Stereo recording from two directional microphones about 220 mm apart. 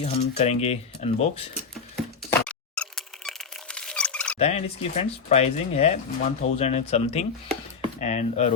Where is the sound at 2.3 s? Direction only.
5° left (ahead or behind).